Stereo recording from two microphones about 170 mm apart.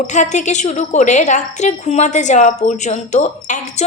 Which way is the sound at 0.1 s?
45° left (ahead or behind).